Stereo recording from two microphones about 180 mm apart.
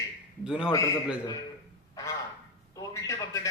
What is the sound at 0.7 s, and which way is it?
Speech, 20° left (ahead or behind).